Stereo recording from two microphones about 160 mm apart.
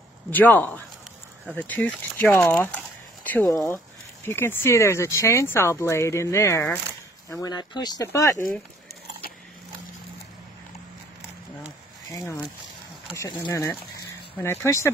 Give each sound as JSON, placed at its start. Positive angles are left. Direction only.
{"t": 0.3, "sound": "speech", "side_deg": 10}
{"t": 13.1, "sound": "speech", "side_deg": 20}